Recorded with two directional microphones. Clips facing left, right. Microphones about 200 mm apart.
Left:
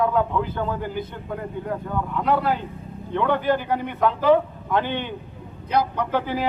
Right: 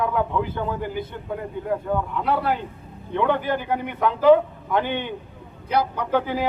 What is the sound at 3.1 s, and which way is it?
Speech, 15° right (ahead or behind).